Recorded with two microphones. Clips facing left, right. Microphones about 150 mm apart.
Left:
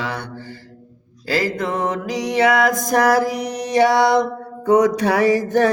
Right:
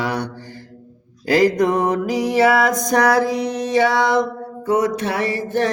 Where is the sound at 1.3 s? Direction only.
15° right (ahead or behind); by 4.2 s 15° left (ahead or behind).